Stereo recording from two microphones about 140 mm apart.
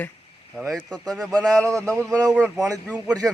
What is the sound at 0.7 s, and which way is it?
A man's voice, 5° left (ahead or behind).